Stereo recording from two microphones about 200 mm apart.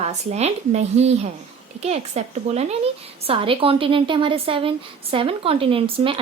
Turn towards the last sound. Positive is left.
turn(degrees=-25)  # may be behind; listen again after turning